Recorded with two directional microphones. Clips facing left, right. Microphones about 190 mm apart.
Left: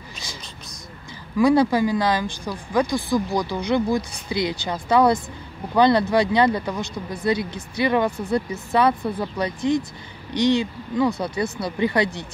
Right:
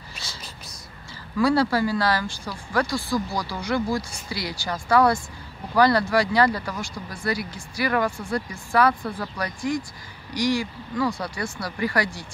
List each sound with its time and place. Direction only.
1.4 s speech: 15° left (ahead or behind)